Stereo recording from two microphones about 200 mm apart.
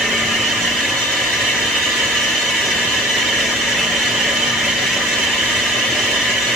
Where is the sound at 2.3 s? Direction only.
Centre (ahead or behind).